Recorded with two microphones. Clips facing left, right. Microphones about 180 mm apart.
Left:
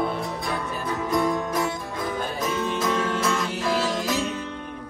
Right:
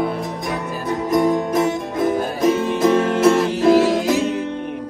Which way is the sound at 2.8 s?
45° right (ahead or behind).